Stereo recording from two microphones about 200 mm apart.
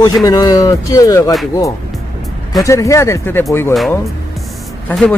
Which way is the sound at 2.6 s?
15° left (ahead or behind).